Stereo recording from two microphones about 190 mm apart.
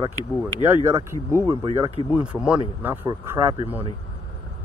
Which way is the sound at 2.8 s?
10° right (ahead or behind).